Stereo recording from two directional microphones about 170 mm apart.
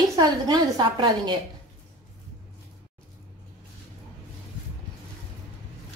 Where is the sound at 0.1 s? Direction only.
25° right (ahead or behind).